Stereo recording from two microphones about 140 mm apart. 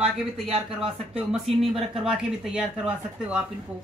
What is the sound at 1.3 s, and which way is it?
Speech, centre (ahead or behind).